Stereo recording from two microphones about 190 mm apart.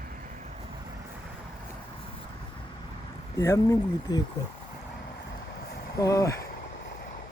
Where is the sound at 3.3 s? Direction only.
15° left (ahead or behind).